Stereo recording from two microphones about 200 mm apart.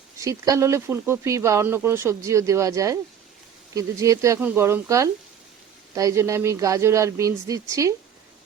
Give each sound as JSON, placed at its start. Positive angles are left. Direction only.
{"t": 0.2, "sound": "speech", "side_deg": -15}